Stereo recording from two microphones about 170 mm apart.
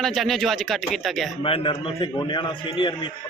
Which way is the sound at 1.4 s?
30° left (ahead or behind).